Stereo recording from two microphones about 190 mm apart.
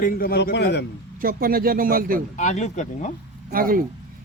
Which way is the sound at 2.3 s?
40° left (ahead or behind).